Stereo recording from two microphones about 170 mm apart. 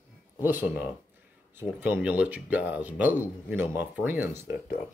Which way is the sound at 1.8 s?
10° right (ahead or behind).